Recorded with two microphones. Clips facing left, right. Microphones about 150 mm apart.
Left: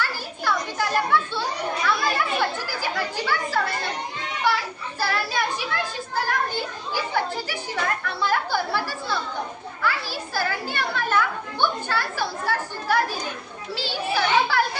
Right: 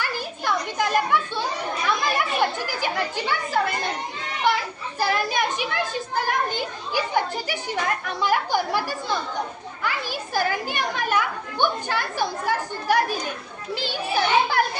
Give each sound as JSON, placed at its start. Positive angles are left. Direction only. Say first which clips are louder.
{"t": 0.0, "sound": "children playing", "louder": "even", "side_deg": -20}
{"t": 8.0, "sound": "chatter", "louder": "right 1 dB", "side_deg": -15}
{"t": 9.8, "sound": "children playing", "louder": "left 1 dB", "side_deg": -15}
{"t": 14.2, "sound": "children playing", "louder": "right 1 dB", "side_deg": -20}